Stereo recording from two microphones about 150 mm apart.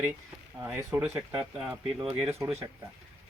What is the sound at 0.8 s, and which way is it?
Speech, 15° right (ahead or behind).